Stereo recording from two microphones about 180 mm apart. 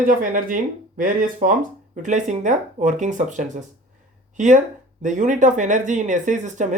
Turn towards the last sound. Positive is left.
turn(degrees=-45)  # may be behind; listen again after turning